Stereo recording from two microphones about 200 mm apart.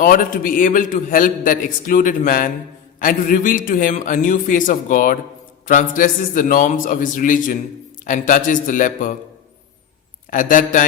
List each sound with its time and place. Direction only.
0.0 s a man's voice: 45° left (ahead or behind)
10.2 s a man's voice: 40° left (ahead or behind)